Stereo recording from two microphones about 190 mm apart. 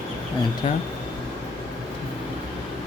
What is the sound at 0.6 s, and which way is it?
Speech, 30° left (ahead or behind).